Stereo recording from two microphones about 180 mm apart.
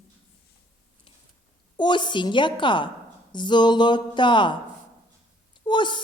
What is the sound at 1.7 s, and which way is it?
Mantra, 25° left (ahead or behind).